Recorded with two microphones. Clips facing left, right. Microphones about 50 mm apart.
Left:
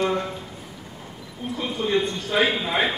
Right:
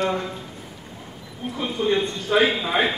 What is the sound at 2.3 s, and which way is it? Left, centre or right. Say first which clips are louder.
Speech: right 3 dB; centre.